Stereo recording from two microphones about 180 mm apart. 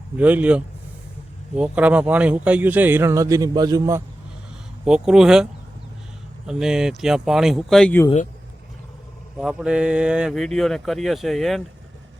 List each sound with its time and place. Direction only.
0.2 s speech: 10° right (ahead or behind)
4.9 s speech: 5° right (ahead or behind)
6.5 s speech: 5° right (ahead or behind)
9.4 s speech: 5° right (ahead or behind)